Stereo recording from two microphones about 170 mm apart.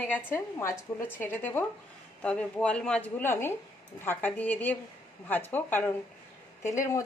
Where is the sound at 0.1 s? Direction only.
15° left (ahead or behind).